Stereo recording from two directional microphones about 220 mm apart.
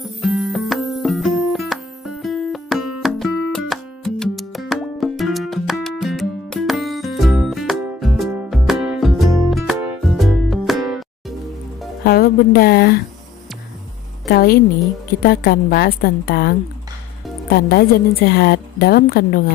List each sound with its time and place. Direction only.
0.2 s music: centre (ahead or behind)
12.0 s speech: 45° left (ahead or behind)
14.2 s a woman's voice: 45° left (ahead or behind)